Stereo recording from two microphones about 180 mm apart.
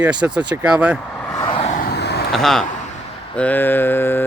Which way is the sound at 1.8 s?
65° left (ahead or behind).